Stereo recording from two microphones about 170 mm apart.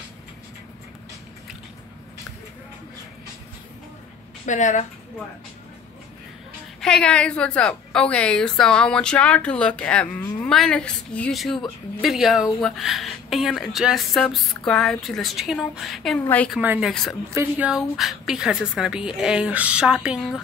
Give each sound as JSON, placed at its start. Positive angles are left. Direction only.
{"t": 4.5, "sound": "a woman's voice", "side_deg": 45}
{"t": 6.8, "sound": "a woman's voice", "side_deg": 5}
{"t": 16.5, "sound": "a woman's voice", "side_deg": -5}
{"t": 17.3, "sound": "a woman's voice", "side_deg": -10}